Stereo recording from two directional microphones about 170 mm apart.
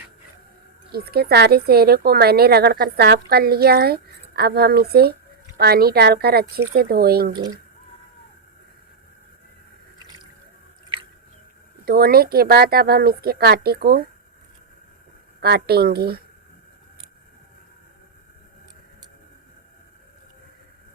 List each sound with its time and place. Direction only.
0.9 s a woman's voice: 65° right (ahead or behind)
10.9 s biting: 30° right (ahead or behind)
11.9 s speech: 65° right (ahead or behind)
15.4 s a woman's voice: 70° right (ahead or behind)